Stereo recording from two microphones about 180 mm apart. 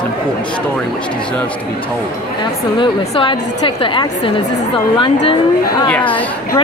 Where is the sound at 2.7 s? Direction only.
25° left (ahead or behind).